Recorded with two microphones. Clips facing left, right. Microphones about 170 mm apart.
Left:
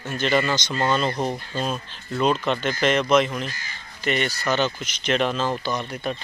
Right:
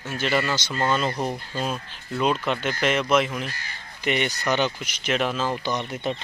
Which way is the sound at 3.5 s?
65° right (ahead or behind).